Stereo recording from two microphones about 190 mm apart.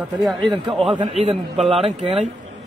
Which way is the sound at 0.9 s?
30° right (ahead or behind).